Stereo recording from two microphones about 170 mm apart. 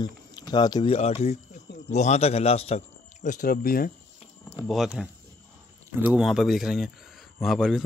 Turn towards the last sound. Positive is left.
turn(degrees=0)  # may be behind; listen again after turning